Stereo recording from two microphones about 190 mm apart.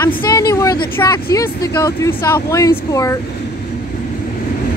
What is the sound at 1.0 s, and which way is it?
Speech, 20° left (ahead or behind).